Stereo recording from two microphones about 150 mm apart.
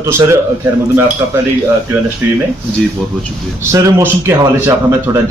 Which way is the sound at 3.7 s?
15° right (ahead or behind).